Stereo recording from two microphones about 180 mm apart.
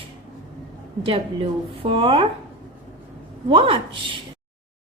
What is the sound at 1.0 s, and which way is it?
A woman's voice, 30° right (ahead or behind).